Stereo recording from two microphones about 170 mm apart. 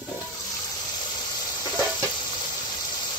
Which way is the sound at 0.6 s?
25° left (ahead or behind).